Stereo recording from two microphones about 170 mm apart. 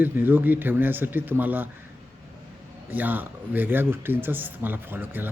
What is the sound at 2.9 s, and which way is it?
Speech, 10° right (ahead or behind).